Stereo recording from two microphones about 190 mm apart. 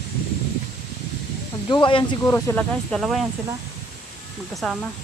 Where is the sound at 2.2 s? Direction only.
10° left (ahead or behind).